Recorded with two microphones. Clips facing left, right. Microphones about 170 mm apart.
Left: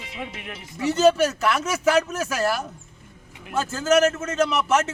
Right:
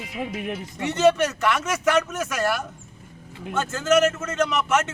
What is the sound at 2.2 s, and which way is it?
Speech, 30° left (ahead or behind).